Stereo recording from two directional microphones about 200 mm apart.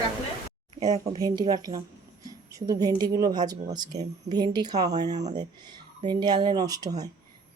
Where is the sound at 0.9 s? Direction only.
30° right (ahead or behind).